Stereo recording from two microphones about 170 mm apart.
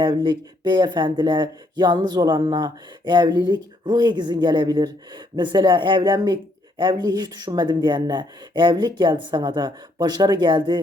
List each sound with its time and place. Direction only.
0.0 s speech: 25° right (ahead or behind)